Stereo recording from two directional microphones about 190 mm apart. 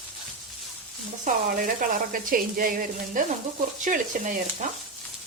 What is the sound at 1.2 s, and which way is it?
Speech, 45° right (ahead or behind).